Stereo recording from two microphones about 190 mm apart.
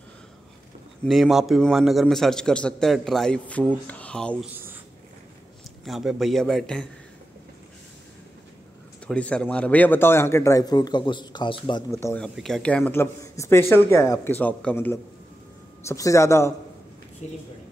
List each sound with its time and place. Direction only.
1.0 s a man's voice: centre (ahead or behind)
5.9 s a man's voice: centre (ahead or behind)
9.0 s a man's voice: 5° left (ahead or behind); by 11.8 s 25° left (ahead or behind)
11.9 s a man's voice: 15° left (ahead or behind)
12.4 s a man's voice: centre (ahead or behind)
17.2 s speech: 35° left (ahead or behind)